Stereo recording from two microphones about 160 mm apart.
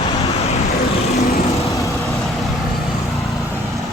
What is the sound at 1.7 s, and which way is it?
Vehicle, 20° left (ahead or behind).